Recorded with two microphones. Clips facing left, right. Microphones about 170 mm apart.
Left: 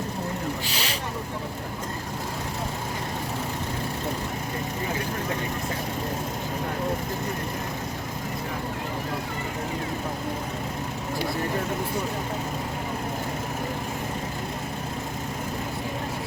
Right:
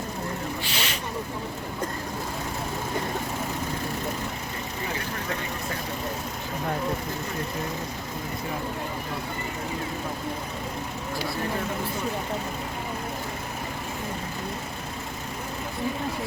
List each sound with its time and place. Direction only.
0.6 s vehicle: 35° left (ahead or behind)